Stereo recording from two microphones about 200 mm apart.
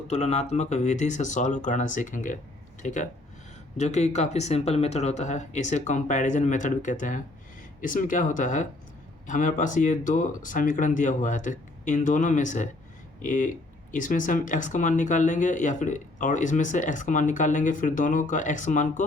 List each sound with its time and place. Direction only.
0.1 s speech: 30° left (ahead or behind)